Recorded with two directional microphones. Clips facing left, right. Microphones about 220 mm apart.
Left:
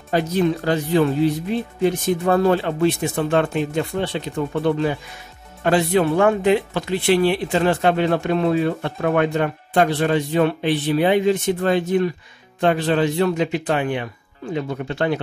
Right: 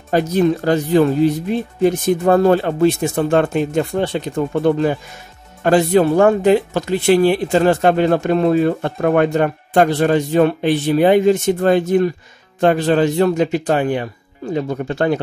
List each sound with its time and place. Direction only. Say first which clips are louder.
0.1 s speech: right 4 dB; 45° right (ahead or behind)